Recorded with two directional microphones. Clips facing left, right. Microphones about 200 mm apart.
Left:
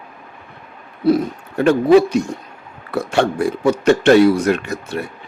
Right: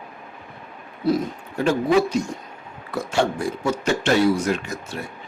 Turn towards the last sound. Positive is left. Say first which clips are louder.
# left 6 dB
turn(degrees=60)  # may be behind; listen again after turning